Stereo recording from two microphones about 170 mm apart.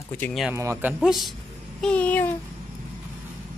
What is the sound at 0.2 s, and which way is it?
Speech, centre (ahead or behind).